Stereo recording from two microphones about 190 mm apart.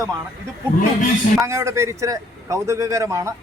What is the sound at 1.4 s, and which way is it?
A man's voice, 15° right (ahead or behind).